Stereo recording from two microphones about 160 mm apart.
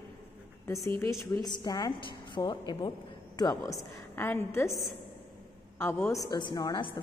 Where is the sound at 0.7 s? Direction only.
15° left (ahead or behind).